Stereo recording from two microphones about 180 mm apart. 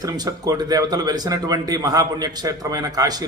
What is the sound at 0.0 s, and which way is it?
Speech, 20° right (ahead or behind).